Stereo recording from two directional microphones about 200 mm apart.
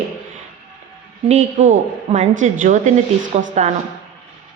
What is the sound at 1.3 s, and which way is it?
A woman's voice, 35° right (ahead or behind).